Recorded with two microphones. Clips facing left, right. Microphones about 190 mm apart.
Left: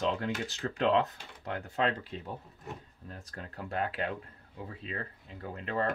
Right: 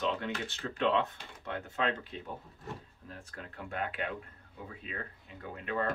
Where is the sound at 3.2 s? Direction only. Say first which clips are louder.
Left 2 dB; 35° left (ahead or behind).